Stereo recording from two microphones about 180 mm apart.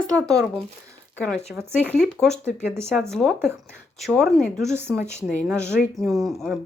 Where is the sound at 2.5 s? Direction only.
15° right (ahead or behind).